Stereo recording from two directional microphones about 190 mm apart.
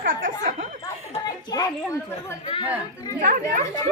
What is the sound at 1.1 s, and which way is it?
Speech, 20° left (ahead or behind).